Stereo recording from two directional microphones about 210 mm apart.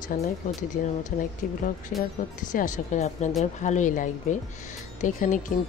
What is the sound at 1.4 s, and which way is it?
Speech, 40° left (ahead or behind).